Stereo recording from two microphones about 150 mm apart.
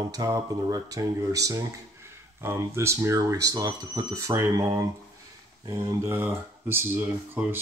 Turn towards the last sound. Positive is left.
turn(degrees=-15)  # may be behind; listen again after turning